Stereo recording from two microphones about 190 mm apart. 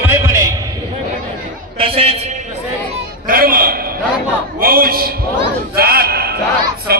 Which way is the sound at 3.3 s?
50° right (ahead or behind).